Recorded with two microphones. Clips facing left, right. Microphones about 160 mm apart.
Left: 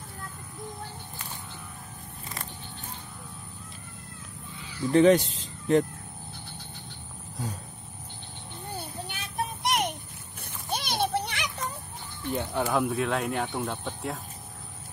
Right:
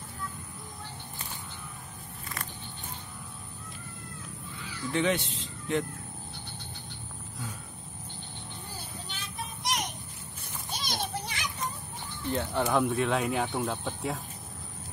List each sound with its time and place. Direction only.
4.9 s speech: 40° left (ahead or behind)
8.6 s child singing: 60° left (ahead or behind)
10.7 s children playing: 65° left (ahead or behind)
12.3 s speech: 10° left (ahead or behind)